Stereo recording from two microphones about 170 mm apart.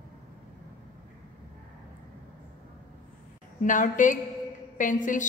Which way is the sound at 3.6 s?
50° left (ahead or behind).